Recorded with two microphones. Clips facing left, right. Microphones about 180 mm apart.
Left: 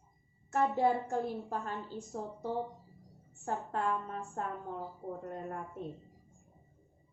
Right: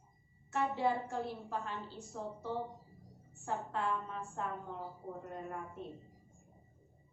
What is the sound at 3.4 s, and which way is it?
A woman's voice, 45° left (ahead or behind).